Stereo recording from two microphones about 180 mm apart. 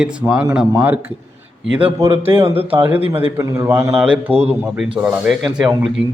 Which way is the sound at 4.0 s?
5° right (ahead or behind).